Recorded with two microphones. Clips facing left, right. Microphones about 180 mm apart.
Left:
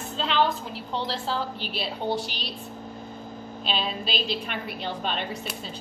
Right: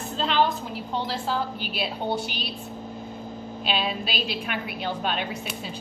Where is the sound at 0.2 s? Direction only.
45° right (ahead or behind).